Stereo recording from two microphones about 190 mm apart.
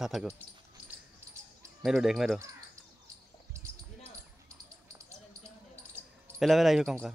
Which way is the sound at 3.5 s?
15° right (ahead or behind).